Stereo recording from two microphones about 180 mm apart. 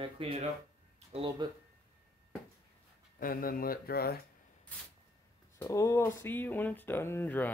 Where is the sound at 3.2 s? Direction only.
50° left (ahead or behind).